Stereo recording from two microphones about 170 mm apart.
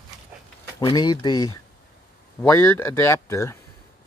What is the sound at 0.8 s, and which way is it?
Speech, 25° left (ahead or behind).